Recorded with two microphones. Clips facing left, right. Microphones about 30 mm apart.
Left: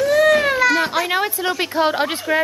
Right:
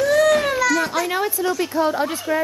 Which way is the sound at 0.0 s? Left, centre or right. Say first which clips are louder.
Left 2 dB; centre.